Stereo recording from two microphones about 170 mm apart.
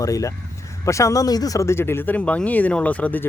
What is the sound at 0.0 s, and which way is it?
Speech, 20° left (ahead or behind).